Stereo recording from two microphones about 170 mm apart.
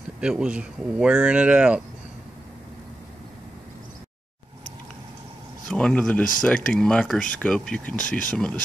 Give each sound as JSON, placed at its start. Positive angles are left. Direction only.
{"t": 0.2, "sound": "speech", "side_deg": -5}
{"t": 5.7, "sound": "speech", "side_deg": 5}